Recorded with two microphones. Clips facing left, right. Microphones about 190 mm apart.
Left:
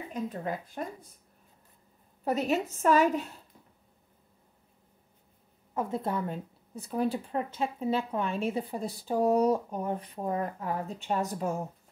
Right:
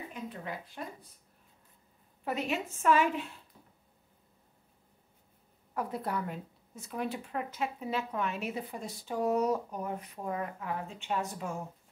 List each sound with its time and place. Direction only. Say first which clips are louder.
0.1 s speech: left 7 dB; 40° left (ahead or behind)
2.2 s a woman's voice: left 5 dB; 40° left (ahead or behind)
5.8 s a woman's voice: left 3 dB; 25° left (ahead or behind); by 11.5 s 40° left (ahead or behind)